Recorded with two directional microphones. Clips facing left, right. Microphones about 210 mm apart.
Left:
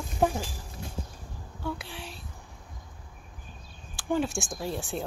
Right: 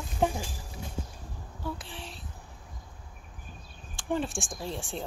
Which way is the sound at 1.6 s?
Centre (ahead or behind).